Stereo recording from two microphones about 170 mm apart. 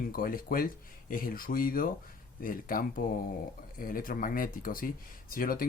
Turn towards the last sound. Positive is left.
turn(degrees=55)  # may be behind; listen again after turning